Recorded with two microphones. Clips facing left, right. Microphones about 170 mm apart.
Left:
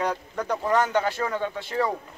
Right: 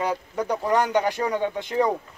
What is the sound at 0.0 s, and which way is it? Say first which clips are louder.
Speech: right 2 dB; 10° right (ahead or behind).